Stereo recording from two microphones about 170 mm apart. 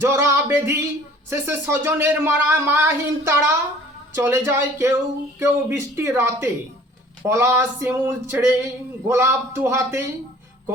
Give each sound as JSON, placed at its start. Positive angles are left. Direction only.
{"t": 0.0, "sound": "speech", "side_deg": -15}